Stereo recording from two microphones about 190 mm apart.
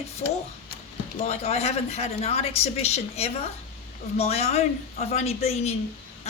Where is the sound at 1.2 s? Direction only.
35° left (ahead or behind).